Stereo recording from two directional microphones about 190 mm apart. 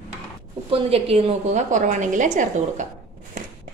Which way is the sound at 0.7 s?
30° right (ahead or behind).